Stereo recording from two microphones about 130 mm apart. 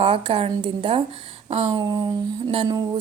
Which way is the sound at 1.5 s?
55° right (ahead or behind).